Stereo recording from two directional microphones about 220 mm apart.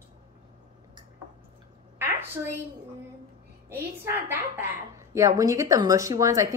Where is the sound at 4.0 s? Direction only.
10° right (ahead or behind).